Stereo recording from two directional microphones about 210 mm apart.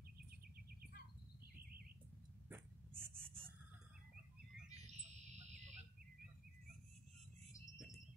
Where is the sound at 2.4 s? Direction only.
10° right (ahead or behind).